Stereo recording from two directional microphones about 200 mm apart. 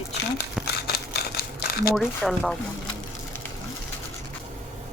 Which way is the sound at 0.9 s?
55° left (ahead or behind).